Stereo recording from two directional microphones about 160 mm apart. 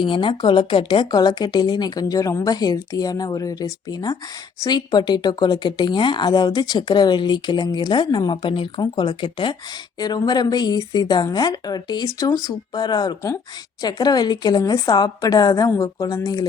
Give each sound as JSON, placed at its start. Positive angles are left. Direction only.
{"t": 0.0, "sound": "speech", "side_deg": 30}